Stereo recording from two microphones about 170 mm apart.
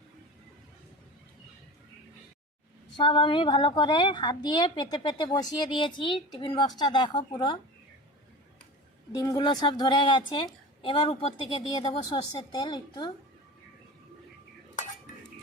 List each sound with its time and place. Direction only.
3.0 s a woman's voice: 30° left (ahead or behind)
9.1 s a woman's voice: 20° left (ahead or behind)